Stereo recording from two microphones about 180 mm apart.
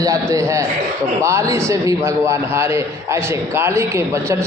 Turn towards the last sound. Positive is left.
turn(degrees=-15)  # may be behind; listen again after turning